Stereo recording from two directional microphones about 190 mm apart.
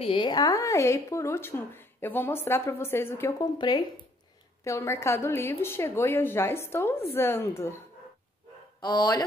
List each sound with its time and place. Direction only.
0.0 s a woman's voice: 25° left (ahead or behind)
8.8 s speech: 20° left (ahead or behind)